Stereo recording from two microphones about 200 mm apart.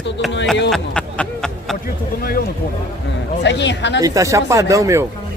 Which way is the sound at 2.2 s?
50° left (ahead or behind).